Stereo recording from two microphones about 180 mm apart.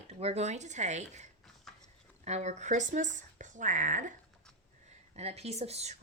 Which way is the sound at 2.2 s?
40° right (ahead or behind).